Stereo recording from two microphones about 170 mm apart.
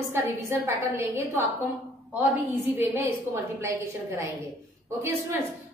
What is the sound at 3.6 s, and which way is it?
Speech, 15° right (ahead or behind).